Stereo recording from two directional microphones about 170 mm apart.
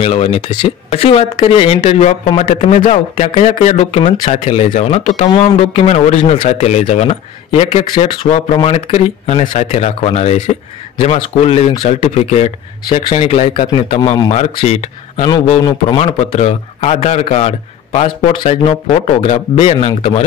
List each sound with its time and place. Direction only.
0.0 s a man's voice: 35° left (ahead or behind)
9.4 s a man's voice: 45° left (ahead or behind); by 14.3 s 25° left (ahead or behind)
14.3 s a man's voice: 40° left (ahead or behind)
15.2 s a man's voice: 25° left (ahead or behind)
16.0 s a man's voice: 40° left (ahead or behind)